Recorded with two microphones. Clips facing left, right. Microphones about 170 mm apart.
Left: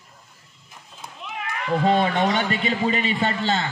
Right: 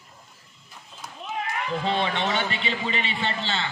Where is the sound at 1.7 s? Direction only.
45° left (ahead or behind).